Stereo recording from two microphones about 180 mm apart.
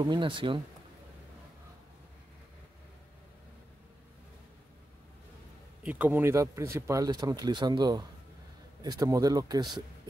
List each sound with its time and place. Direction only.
0.0 s speech: 25° right (ahead or behind)
5.9 s speech: 10° right (ahead or behind)